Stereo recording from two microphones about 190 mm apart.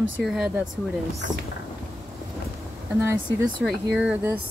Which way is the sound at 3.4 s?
Centre (ahead or behind).